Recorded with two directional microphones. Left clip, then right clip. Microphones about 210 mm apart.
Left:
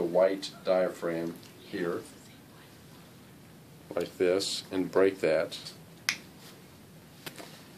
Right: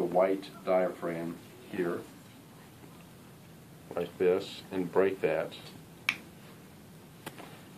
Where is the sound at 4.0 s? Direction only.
50° left (ahead or behind).